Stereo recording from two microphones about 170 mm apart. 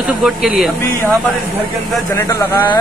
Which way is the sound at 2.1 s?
15° left (ahead or behind).